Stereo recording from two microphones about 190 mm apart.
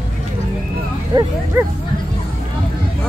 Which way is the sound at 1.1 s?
20° right (ahead or behind).